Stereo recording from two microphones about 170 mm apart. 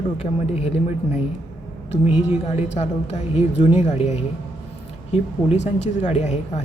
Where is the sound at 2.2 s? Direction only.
40° left (ahead or behind).